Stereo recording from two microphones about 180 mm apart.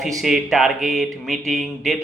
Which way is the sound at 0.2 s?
Centre (ahead or behind).